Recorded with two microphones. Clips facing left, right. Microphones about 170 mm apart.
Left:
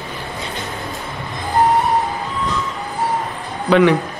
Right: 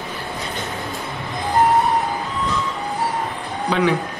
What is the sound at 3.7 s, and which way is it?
Speech, 65° left (ahead or behind).